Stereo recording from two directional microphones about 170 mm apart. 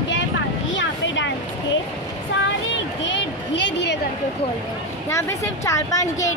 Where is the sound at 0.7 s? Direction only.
90° left.